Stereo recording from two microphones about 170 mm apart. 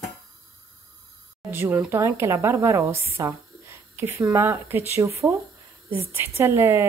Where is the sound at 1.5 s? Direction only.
10° right (ahead or behind).